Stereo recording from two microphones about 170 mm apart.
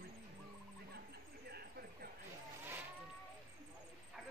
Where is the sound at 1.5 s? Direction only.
70° right (ahead or behind).